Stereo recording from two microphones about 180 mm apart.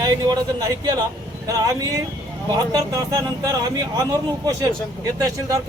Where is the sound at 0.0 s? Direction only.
20° right (ahead or behind).